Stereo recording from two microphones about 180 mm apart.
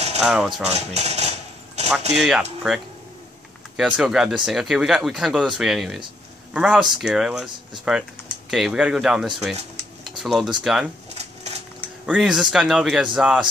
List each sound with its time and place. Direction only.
0.2 s speech: centre (ahead or behind)
0.7 s cutlery: 35° right (ahead or behind)
2.1 s speech: centre (ahead or behind)
11.1 s dishes: 35° right (ahead or behind)
12.1 s speech: centre (ahead or behind)